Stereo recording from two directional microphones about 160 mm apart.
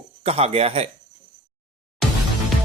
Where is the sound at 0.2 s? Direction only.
40° right (ahead or behind).